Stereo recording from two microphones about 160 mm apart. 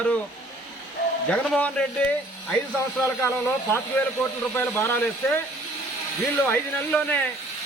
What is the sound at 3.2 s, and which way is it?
A man's voice, 15° left (ahead or behind).